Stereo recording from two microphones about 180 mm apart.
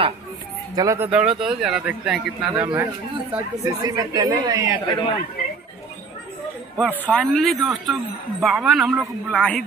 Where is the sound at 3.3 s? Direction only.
15° right (ahead or behind).